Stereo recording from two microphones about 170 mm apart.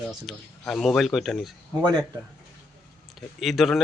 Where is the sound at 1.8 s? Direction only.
25° right (ahead or behind).